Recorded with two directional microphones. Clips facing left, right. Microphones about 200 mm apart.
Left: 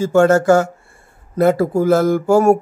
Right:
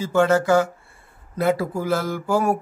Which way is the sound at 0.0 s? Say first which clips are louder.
Left 6 dB; 45° left (ahead or behind).